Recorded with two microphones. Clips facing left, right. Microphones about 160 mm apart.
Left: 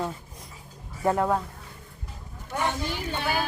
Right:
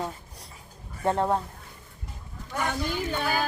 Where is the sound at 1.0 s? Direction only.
25° right (ahead or behind).